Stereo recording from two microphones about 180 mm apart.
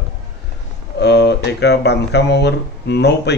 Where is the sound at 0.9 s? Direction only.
65° left (ahead or behind).